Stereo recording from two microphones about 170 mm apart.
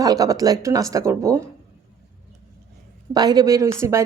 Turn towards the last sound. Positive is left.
turn(degrees=-15)  # may be behind; listen again after turning